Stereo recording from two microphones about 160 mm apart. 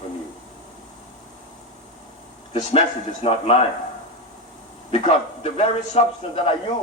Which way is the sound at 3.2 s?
35° left (ahead or behind).